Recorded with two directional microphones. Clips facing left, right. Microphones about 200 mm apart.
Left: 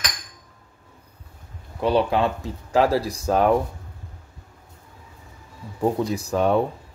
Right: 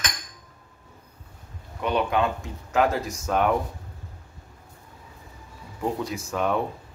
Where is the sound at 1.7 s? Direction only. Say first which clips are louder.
Left 4 dB; 30° left (ahead or behind).